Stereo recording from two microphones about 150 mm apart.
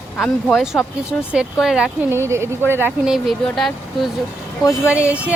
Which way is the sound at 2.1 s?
15° right (ahead or behind).